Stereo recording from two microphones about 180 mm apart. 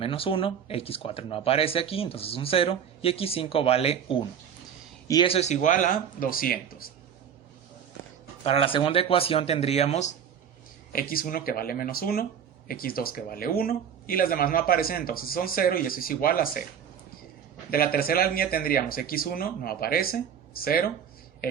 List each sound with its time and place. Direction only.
0.0 s speech: 30° left (ahead or behind); by 6.8 s 55° left (ahead or behind)
8.4 s speech: 30° left (ahead or behind)
10.9 s speech: 55° left (ahead or behind)
17.7 s a man's voice: 55° left (ahead or behind)